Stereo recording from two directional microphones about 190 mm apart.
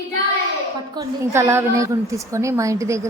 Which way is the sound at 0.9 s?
15° right (ahead or behind).